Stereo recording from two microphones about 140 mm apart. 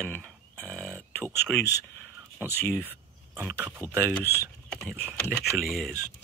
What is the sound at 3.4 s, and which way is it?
Speech, 15° right (ahead or behind).